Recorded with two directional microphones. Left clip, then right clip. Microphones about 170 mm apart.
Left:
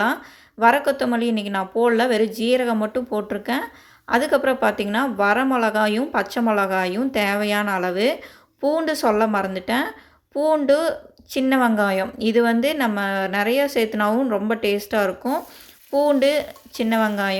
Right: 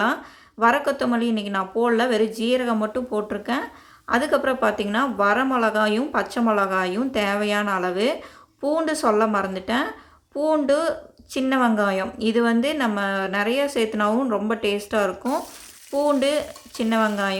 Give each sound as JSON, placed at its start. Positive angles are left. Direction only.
{"t": 0.6, "sound": "speech", "side_deg": 10}